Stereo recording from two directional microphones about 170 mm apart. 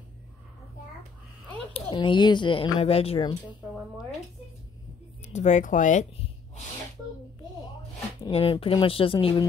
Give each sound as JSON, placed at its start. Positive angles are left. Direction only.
{"t": 1.7, "sound": "speech", "side_deg": 30}
{"t": 5.2, "sound": "speech", "side_deg": 45}
{"t": 8.2, "sound": "speech", "side_deg": 35}